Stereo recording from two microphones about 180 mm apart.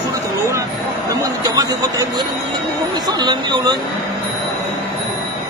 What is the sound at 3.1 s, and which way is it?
Speech, 25° right (ahead or behind).